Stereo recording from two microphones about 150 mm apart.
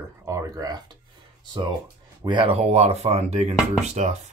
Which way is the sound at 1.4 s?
30° right (ahead or behind).